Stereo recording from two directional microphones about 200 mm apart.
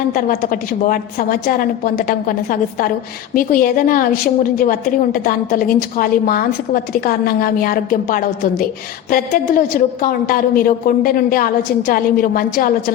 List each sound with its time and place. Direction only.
0.1 s a woman's voice: 45° left (ahead or behind)